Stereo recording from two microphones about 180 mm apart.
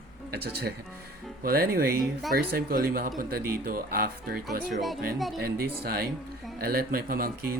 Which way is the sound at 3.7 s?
55° right (ahead or behind).